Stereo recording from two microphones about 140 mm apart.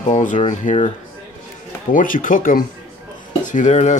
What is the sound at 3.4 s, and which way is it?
Speech, 60° left (ahead or behind).